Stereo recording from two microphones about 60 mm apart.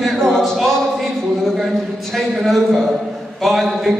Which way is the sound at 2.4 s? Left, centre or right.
Centre.